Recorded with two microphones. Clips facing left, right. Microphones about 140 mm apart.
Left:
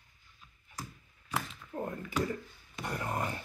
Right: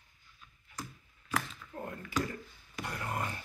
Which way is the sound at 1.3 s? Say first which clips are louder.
Even; 20° left (ahead or behind).